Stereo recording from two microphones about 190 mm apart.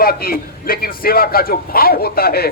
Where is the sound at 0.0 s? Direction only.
50° left (ahead or behind).